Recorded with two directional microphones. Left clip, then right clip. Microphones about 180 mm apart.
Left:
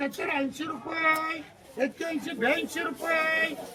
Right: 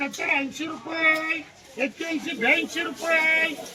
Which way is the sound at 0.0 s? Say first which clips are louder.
Right 4 dB; 10° left (ahead or behind).